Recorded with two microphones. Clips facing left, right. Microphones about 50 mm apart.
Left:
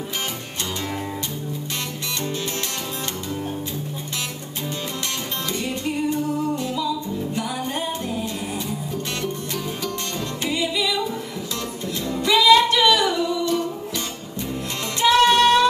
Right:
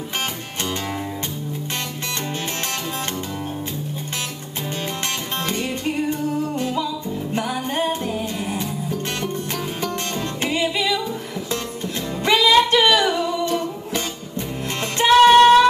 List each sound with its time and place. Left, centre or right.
5.5 s music: right
10.4 s music: right
12.2 s music: right